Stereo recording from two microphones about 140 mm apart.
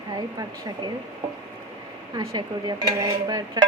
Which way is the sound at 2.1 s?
30° right (ahead or behind).